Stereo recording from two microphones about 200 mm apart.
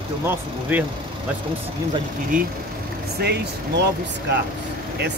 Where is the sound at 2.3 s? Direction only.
40° right (ahead or behind).